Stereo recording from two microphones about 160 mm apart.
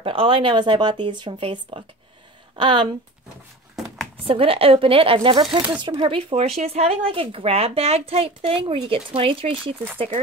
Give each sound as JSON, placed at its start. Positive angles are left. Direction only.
{"t": 0.0, "sound": "speech", "side_deg": -35}
{"t": 3.7, "sound": "a sound", "side_deg": 0}
{"t": 4.3, "sound": "speech", "side_deg": -35}